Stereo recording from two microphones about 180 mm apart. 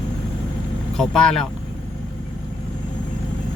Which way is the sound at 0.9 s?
5° left (ahead or behind).